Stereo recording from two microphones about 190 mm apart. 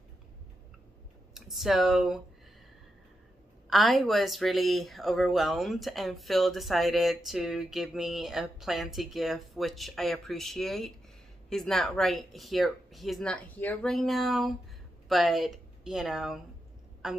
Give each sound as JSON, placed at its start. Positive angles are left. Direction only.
{"t": 1.3, "sound": "speech", "side_deg": 0}
{"t": 3.7, "sound": "a woman's voice", "side_deg": 0}